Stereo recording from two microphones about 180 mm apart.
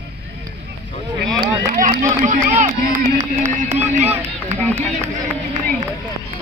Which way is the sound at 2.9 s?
40° right (ahead or behind).